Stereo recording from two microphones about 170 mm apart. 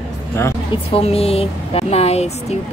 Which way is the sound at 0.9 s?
35° left (ahead or behind).